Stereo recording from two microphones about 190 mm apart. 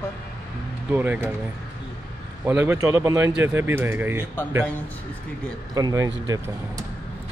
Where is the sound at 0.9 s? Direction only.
10° right (ahead or behind).